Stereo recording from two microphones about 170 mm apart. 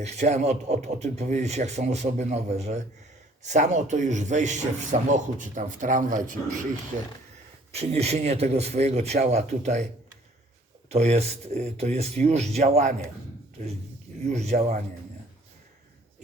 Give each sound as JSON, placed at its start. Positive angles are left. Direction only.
{"t": 0.0, "sound": "speech", "side_deg": -40}
{"t": 7.7, "sound": "speech", "side_deg": -40}
{"t": 10.8, "sound": "speech", "side_deg": -40}
{"t": 14.3, "sound": "speech", "side_deg": -40}